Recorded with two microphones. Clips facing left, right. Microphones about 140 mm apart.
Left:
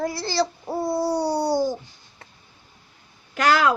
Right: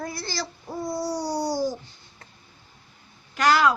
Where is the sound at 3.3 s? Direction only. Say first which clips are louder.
Left 1 dB; 50° left (ahead or behind).